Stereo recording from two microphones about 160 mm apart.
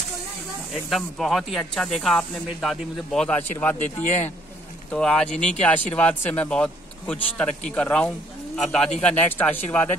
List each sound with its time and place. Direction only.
0.8 s speech: centre (ahead or behind)
3.7 s speech: 45° left (ahead or behind)
4.9 s speech: 5° left (ahead or behind)